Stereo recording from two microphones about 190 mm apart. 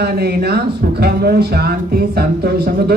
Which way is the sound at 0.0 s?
55° right (ahead or behind).